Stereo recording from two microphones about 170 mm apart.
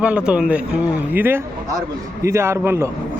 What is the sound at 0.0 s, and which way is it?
Speech, 5° right (ahead or behind).